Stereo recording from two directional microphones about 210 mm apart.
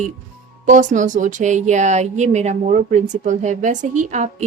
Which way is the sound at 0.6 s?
35° right (ahead or behind).